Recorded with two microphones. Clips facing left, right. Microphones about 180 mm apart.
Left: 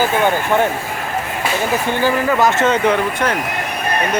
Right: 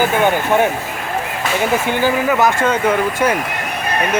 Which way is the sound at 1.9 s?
15° right (ahead or behind).